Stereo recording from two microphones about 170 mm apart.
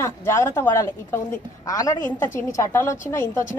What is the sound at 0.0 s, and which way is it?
A woman's voice, 15° left (ahead or behind).